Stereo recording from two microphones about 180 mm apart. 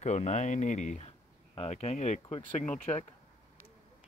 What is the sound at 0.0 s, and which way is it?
Speech, 40° left (ahead or behind).